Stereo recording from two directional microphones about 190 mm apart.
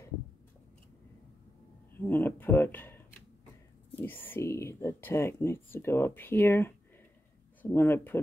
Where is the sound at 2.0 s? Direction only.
10° left (ahead or behind).